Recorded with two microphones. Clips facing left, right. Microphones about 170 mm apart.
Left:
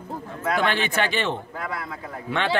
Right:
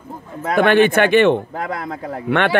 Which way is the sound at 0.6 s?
55° right (ahead or behind).